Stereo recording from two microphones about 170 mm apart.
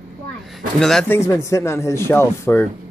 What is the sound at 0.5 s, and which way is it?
A man's voice, centre (ahead or behind).